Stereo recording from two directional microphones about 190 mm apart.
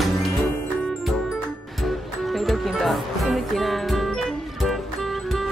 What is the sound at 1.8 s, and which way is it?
Music, centre (ahead or behind).